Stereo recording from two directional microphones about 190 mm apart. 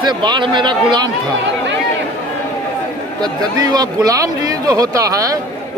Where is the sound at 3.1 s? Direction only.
20° right (ahead or behind).